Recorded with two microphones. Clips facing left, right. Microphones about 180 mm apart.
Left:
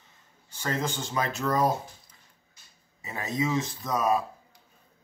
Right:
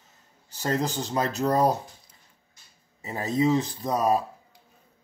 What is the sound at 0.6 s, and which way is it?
Speech, 35° right (ahead or behind).